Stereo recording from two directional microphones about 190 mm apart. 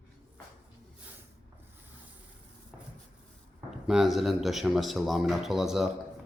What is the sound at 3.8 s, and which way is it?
Speech, centre (ahead or behind).